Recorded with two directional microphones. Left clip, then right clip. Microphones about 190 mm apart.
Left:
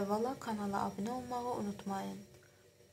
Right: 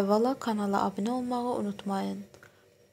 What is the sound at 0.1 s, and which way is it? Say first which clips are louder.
A woman's voice: right 10 dB; 40° right (ahead or behind).